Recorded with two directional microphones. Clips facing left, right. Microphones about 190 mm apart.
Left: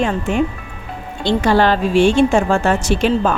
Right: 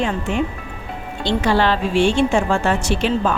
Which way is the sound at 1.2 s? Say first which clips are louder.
Left 3 dB; 45° left (ahead or behind).